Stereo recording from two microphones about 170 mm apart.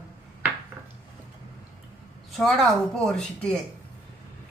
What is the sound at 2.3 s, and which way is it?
A woman's voice, centre (ahead or behind).